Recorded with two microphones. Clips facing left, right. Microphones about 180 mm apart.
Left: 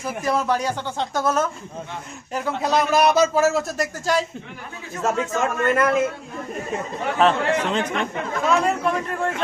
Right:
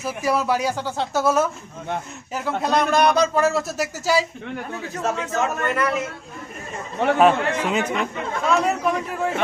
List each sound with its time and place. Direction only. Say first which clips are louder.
0.0 s a woman's voice: right 1 dB; 10° right (ahead or behind)
5.2 s a man's voice: left 2 dB; 45° left (ahead or behind)
7.2 s a woman's voice: even; 10° right (ahead or behind)